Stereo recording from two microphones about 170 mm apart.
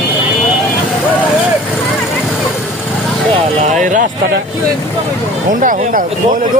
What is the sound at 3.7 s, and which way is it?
Speech, 50° right (ahead or behind).